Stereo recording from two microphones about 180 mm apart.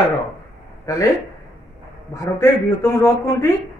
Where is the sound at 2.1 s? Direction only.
15° left (ahead or behind).